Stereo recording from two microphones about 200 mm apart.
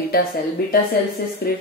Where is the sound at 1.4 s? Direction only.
50° left (ahead or behind).